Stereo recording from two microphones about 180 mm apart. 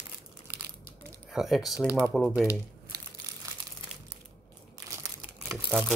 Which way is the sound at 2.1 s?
Centre (ahead or behind).